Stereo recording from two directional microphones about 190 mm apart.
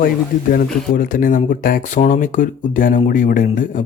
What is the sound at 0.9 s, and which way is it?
Speech, 45° left (ahead or behind).